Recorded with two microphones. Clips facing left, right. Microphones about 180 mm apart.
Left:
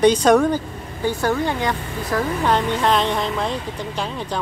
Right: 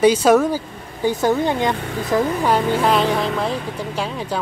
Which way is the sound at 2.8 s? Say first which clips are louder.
Right 2 dB; 5° right (ahead or behind).